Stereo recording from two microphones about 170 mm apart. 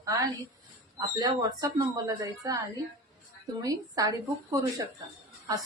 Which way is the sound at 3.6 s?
20° right (ahead or behind).